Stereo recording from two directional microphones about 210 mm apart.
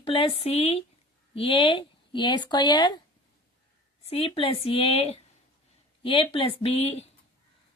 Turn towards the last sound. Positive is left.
turn(degrees=30)  # may be behind; listen again after turning